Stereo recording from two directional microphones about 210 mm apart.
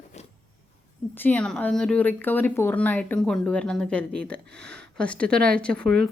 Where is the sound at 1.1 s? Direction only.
10° left (ahead or behind).